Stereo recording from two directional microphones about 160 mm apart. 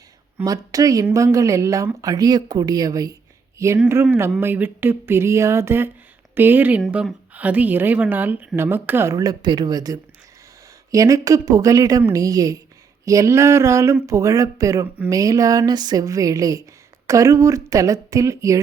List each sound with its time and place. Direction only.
0.4 s a woman's voice: 20° right (ahead or behind)